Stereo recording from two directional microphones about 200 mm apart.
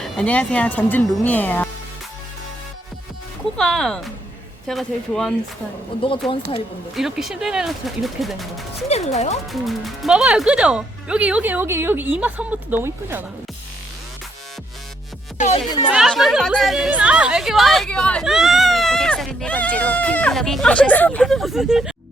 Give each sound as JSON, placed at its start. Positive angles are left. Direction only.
{"t": 0.0, "sound": "speech", "side_deg": 5}
{"t": 3.6, "sound": "a woman's voice", "side_deg": 0}
{"t": 6.0, "sound": "speech", "side_deg": 25}
{"t": 6.9, "sound": "a woman's voice", "side_deg": 0}
{"t": 8.9, "sound": "speech", "side_deg": 35}
{"t": 9.5, "sound": "a woman's voice", "side_deg": 0}
{"t": 15.4, "sound": "speech", "side_deg": 35}
{"t": 15.9, "sound": "a woman's voice", "side_deg": 0}